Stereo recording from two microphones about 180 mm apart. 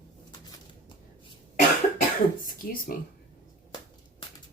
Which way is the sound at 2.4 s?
50° left (ahead or behind).